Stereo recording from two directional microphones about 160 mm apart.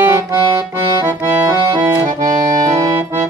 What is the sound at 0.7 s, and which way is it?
Accordion, 15° right (ahead or behind).